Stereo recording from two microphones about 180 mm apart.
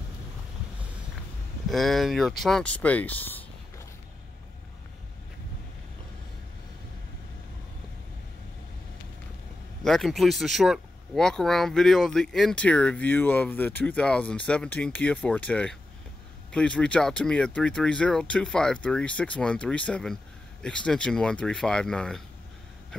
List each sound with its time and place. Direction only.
1.7 s speech: centre (ahead or behind)
9.8 s speech: centre (ahead or behind)